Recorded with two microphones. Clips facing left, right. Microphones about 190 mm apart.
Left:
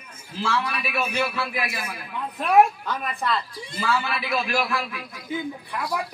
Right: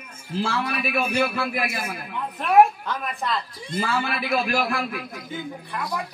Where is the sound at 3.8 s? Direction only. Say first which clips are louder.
Left 1 dB; 45° right (ahead or behind).